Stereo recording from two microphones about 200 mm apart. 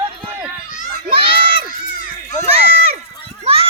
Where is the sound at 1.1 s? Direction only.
25° right (ahead or behind).